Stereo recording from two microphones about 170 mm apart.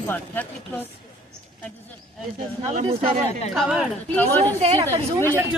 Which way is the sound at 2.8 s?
30° right (ahead or behind).